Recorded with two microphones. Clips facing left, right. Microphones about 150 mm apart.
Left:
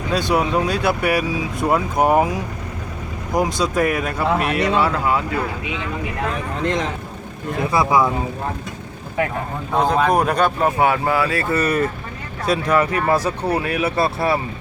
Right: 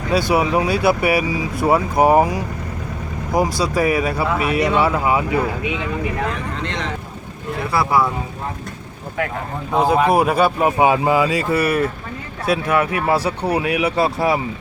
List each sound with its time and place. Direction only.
0.1 s speech: 10° right (ahead or behind)
7.7 s speech: 15° left (ahead or behind)
9.7 s speech: 10° right (ahead or behind)